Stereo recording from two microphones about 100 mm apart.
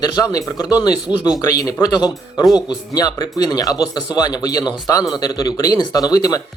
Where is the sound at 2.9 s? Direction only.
40° left (ahead or behind).